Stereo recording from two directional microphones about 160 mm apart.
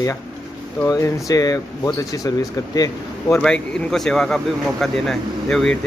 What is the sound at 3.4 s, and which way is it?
Speech, 5° left (ahead or behind).